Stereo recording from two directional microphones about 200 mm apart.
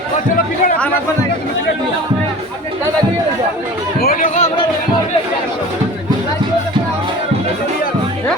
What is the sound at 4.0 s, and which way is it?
Speech, 45° left (ahead or behind).